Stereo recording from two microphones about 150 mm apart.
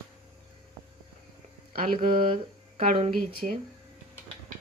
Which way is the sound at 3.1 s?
80° right.